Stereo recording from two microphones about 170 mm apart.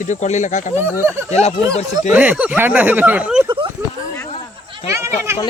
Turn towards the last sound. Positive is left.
turn(degrees=-15)  # may be behind; listen again after turning